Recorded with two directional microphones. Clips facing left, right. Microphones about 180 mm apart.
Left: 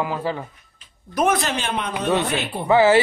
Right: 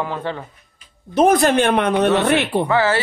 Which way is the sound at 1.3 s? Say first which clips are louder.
Right 9 dB; 55° right (ahead or behind).